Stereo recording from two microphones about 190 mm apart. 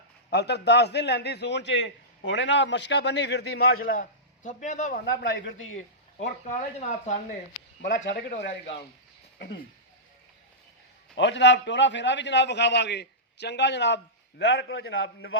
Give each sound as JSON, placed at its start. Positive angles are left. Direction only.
{"t": 0.3, "sound": "a man's voice", "side_deg": 60}
{"t": 4.4, "sound": "a man's voice", "side_deg": 40}
{"t": 5.0, "sound": "a man's voice", "side_deg": 65}
{"t": 6.7, "sound": "a man's voice", "side_deg": 40}
{"t": 7.9, "sound": "a man's voice", "side_deg": 70}
{"t": 11.1, "sound": "a man's voice", "side_deg": 70}